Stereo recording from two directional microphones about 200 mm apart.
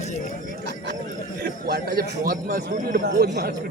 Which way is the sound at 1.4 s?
50° right (ahead or behind).